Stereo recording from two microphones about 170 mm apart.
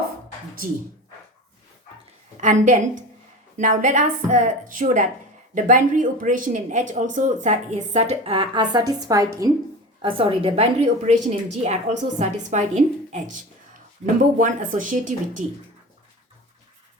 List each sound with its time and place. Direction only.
2.4 s a woman's voice: 45° right (ahead or behind); by 9.5 s 20° right (ahead or behind)
10.0 s a woman's voice: 30° right (ahead or behind); by 15.4 s 50° right (ahead or behind)